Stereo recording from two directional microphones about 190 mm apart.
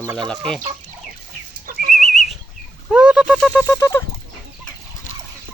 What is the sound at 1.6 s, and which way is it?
Livestock, 50° right (ahead or behind).